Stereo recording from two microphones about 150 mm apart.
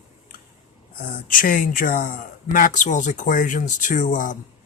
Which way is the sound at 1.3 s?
65° left (ahead or behind).